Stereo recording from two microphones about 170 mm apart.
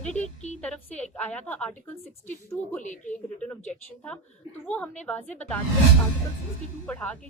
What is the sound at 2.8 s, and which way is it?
Speech, 45° left (ahead or behind).